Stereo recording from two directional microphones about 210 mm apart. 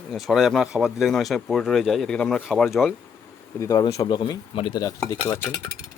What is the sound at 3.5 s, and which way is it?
Speech, 15° left (ahead or behind).